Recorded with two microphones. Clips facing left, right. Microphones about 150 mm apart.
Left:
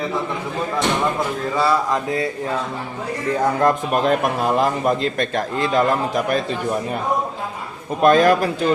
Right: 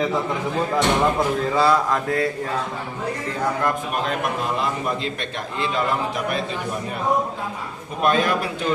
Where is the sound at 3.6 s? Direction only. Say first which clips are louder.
Left 6 dB; 45° left (ahead or behind).